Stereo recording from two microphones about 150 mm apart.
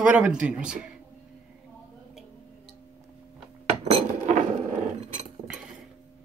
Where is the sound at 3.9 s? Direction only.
55° right (ahead or behind).